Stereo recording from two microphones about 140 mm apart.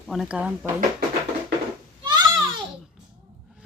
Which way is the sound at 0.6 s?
80° right.